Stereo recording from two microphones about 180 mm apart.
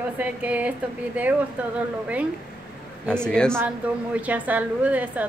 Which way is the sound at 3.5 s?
10° right (ahead or behind).